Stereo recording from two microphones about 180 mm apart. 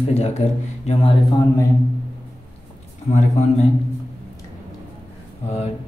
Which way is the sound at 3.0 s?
40° left (ahead or behind).